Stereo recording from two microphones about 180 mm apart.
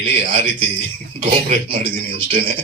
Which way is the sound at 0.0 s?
30° right (ahead or behind).